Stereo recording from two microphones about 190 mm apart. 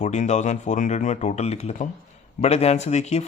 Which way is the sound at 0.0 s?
40° left (ahead or behind).